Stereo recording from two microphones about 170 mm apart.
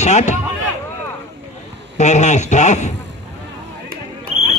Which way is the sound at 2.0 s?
45° left (ahead or behind).